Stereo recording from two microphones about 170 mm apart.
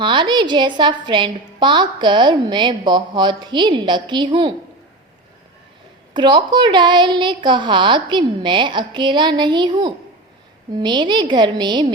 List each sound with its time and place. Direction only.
0.0 s a woman's voice: 30° right (ahead or behind)
6.1 s a woman's voice: 25° right (ahead or behind)